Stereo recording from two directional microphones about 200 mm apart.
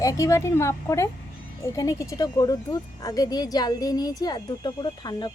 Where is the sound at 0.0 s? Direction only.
15° left (ahead or behind).